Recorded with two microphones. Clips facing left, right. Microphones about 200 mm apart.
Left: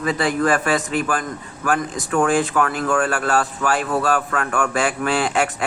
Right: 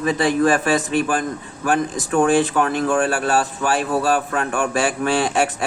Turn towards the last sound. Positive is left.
turn(degrees=-25)  # may be behind; listen again after turning